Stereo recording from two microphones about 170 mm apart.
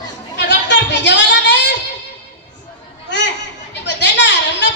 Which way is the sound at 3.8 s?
90° left.